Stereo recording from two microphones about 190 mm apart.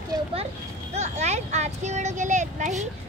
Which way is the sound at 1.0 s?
35° right (ahead or behind).